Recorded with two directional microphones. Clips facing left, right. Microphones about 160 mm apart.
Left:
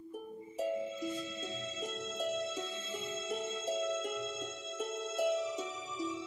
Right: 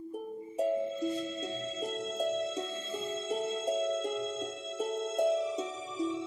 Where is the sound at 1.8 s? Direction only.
30° right (ahead or behind).